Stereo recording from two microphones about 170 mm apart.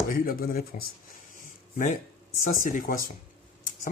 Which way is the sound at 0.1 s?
60° left (ahead or behind).